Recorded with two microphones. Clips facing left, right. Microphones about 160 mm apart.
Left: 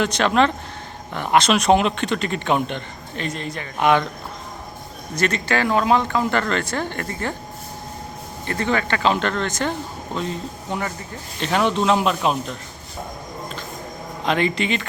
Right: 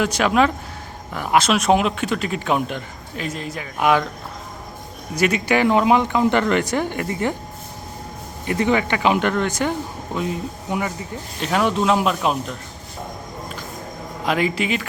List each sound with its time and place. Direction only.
0.0 s speech: 5° right (ahead or behind)
5.1 s speech: 10° right (ahead or behind)
8.4 s speech: 15° right (ahead or behind)
14.3 s speech: 5° right (ahead or behind)